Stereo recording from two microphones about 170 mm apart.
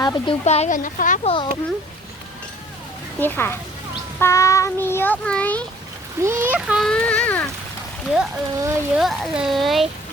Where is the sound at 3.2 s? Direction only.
10° left (ahead or behind).